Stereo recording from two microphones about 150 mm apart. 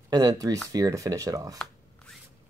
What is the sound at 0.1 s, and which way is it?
Speech, 25° right (ahead or behind).